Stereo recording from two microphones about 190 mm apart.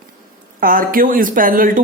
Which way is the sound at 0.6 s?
50° right (ahead or behind).